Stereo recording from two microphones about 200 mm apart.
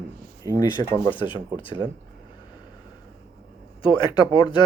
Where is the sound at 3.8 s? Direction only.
25° left (ahead or behind).